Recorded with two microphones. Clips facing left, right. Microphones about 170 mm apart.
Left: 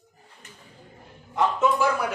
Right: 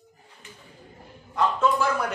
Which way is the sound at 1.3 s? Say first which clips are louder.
Even; 20° left (ahead or behind).